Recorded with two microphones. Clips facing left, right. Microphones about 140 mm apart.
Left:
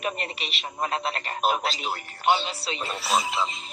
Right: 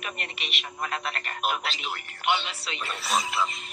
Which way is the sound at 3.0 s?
Centre (ahead or behind).